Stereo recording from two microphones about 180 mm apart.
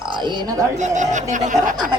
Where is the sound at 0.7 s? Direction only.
40° right (ahead or behind).